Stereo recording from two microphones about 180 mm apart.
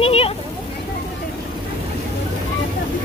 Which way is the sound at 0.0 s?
30° left (ahead or behind).